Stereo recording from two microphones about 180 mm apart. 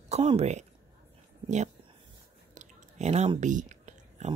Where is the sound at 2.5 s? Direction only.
40° right (ahead or behind).